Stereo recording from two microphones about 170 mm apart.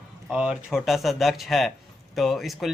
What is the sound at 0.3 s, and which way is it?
A man's voice, 5° right (ahead or behind).